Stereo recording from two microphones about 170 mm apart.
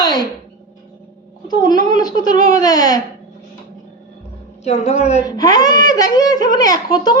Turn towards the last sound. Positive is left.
turn(degrees=25)  # may be behind; listen again after turning